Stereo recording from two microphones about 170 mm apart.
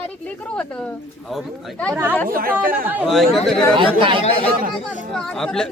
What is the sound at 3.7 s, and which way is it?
Speech, 30° right (ahead or behind).